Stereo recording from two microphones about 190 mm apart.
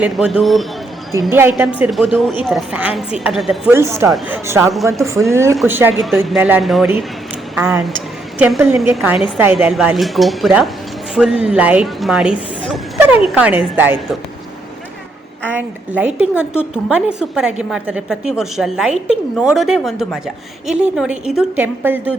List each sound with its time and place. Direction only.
0.0 s a woman's voice: 5° right (ahead or behind)
1.3 s a woman's voice: 10° right (ahead or behind)
3.7 s a woman's voice: 15° right (ahead or behind)
6.0 s a woman's voice: centre (ahead or behind)
15.4 s a woman's voice: 10° right (ahead or behind)